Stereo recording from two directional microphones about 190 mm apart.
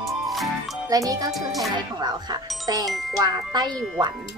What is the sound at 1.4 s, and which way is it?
Speech, centre (ahead or behind).